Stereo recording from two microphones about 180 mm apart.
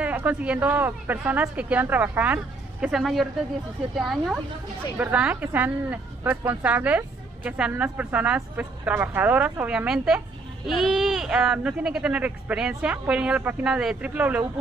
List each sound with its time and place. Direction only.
0.0 s speech: 10° right (ahead or behind)